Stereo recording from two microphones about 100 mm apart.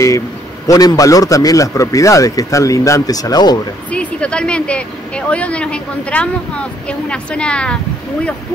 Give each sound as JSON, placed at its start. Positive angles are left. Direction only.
{"t": 0.7, "sound": "a man's voice", "side_deg": 40}
{"t": 3.9, "sound": "speech", "side_deg": 10}